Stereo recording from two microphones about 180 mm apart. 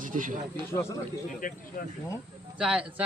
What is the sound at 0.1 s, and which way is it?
Speech, 45° right (ahead or behind).